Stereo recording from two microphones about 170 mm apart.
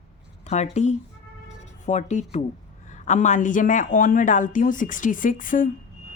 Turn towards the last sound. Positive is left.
turn(degrees=55)  # may be behind; listen again after turning